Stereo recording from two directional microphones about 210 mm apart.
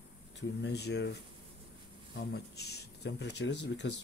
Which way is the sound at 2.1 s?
50° left (ahead or behind).